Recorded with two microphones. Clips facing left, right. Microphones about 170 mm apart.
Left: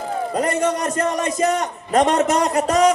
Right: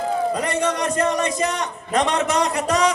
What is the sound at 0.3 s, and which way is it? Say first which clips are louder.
A man's voice: left 2 dB; 45° left (ahead or behind).